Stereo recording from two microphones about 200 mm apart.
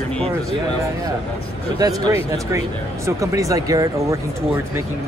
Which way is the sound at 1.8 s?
15° right (ahead or behind).